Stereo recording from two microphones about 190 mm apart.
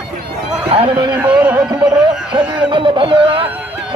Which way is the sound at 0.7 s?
30° right (ahead or behind).